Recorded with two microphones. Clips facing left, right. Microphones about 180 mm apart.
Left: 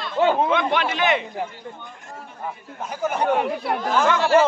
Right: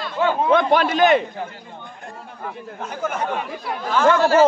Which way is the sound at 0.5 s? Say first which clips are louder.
Right 5 dB; 40° right (ahead or behind).